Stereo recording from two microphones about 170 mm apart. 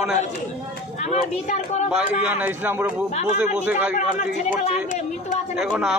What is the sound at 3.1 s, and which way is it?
Speech, 40° left (ahead or behind).